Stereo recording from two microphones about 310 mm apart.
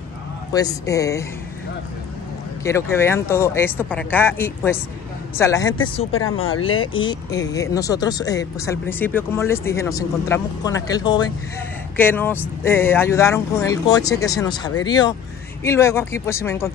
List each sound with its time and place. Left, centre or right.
0.5 s speech: centre
2.6 s speech: centre
6.1 s speech: left
7.1 s speech: centre